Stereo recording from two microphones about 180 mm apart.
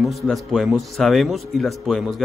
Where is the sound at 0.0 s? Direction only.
Centre (ahead or behind).